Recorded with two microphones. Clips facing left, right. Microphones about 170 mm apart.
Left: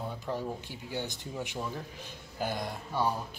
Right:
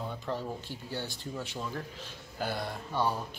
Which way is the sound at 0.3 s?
15° left (ahead or behind).